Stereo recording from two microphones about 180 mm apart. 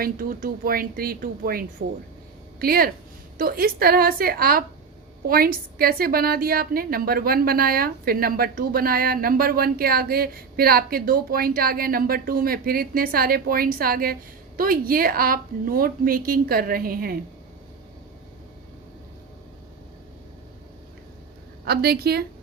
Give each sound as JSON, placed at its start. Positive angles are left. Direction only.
{"t": 0.0, "sound": "a woman's voice", "side_deg": -50}
{"t": 21.6, "sound": "a woman's voice", "side_deg": -60}